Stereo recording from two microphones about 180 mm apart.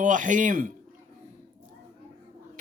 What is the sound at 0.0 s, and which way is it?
Speech, 45° right (ahead or behind).